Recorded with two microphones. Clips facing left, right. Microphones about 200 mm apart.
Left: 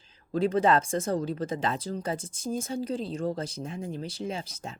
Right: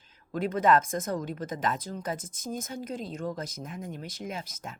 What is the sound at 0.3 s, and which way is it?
Speech, 30° left (ahead or behind).